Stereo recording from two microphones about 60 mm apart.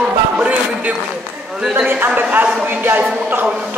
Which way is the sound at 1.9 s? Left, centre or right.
Right.